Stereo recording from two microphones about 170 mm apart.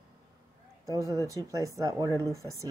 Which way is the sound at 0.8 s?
20° right (ahead or behind).